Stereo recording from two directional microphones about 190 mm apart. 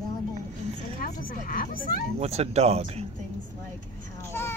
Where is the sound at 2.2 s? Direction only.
35° right (ahead or behind).